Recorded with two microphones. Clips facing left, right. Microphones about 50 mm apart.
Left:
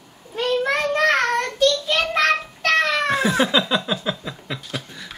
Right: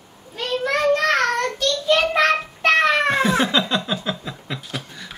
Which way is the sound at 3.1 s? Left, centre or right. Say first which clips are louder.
Even; centre.